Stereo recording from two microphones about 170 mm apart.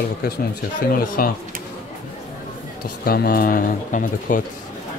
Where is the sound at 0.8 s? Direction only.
55° left (ahead or behind).